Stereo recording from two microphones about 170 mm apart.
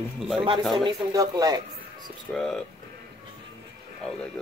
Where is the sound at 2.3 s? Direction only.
5° left (ahead or behind).